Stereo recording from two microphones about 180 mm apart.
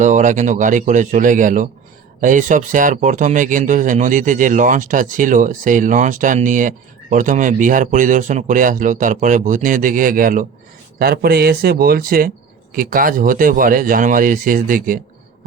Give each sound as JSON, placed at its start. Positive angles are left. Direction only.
{"t": 0.0, "sound": "speech", "side_deg": -45}